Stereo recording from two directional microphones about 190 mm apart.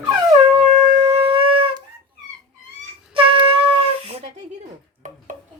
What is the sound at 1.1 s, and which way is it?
Shofar, 30° right (ahead or behind).